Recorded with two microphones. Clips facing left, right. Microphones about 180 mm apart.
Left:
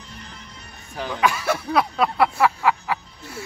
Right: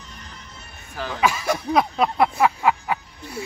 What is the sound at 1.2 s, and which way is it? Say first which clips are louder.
Speech: even; 10° right (ahead or behind).